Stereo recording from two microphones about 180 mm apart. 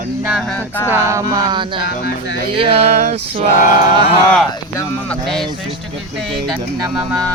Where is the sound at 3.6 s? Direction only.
50° left (ahead or behind).